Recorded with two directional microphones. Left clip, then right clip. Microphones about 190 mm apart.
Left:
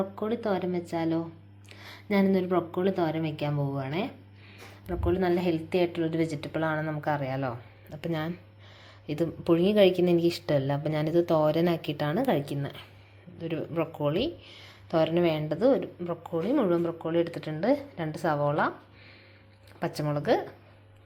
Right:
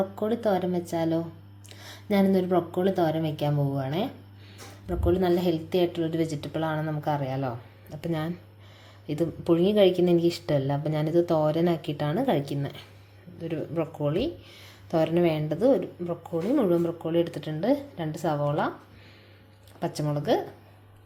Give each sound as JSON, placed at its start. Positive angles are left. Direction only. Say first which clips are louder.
{"t": 0.0, "sound": "a woman's voice", "louder": "right 4 dB", "side_deg": -25}
{"t": 20.0, "sound": "speech", "louder": "even", "side_deg": -5}